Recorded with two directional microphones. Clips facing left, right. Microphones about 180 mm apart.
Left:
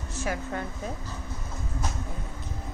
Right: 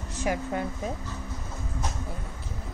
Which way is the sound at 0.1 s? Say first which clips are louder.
Right 3 dB; 15° right (ahead or behind).